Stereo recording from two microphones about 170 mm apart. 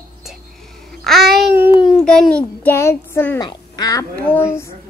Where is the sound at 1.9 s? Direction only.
Centre (ahead or behind).